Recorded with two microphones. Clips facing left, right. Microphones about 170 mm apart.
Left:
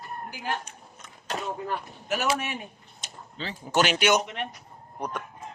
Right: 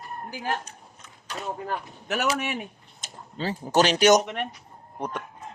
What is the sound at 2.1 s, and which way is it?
Speech, 70° right (ahead or behind).